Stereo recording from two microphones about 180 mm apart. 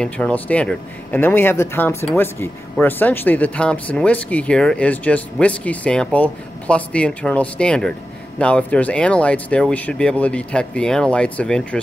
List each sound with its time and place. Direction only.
0.0 s speech: 10° left (ahead or behind)